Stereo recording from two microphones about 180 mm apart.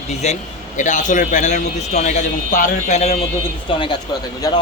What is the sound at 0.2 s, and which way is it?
A man's voice, 40° left (ahead or behind).